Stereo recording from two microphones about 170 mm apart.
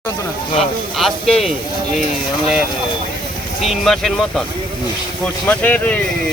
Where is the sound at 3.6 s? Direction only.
Centre (ahead or behind).